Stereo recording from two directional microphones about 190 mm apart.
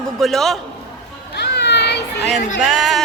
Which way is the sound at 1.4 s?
65° left (ahead or behind).